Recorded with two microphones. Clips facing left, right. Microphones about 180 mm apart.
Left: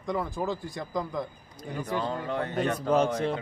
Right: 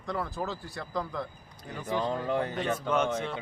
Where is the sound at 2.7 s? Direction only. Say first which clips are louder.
Left 5 dB; 35° left (ahead or behind).